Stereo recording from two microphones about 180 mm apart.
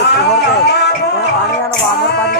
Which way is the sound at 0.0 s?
65° left (ahead or behind).